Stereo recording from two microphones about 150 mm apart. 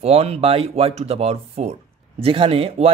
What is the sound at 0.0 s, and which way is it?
Speech, 45° right (ahead or behind).